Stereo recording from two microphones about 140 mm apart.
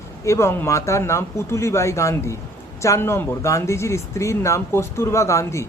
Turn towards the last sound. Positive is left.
turn(degrees=20)  # may be behind; listen again after turning